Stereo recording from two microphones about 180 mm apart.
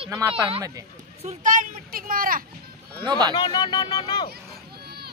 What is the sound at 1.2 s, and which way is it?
Speech, 40° right (ahead or behind).